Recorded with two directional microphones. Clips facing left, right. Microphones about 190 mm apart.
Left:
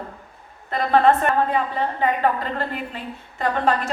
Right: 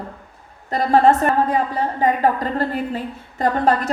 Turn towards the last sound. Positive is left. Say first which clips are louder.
# right 3 dB
turn(degrees=-40)  # may be behind; listen again after turning